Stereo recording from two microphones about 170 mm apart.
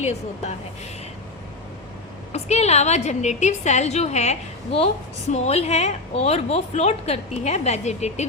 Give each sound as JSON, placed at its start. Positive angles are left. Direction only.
{"t": 0.0, "sound": "a woman's voice", "side_deg": 40}
{"t": 2.3, "sound": "a woman's voice", "side_deg": 40}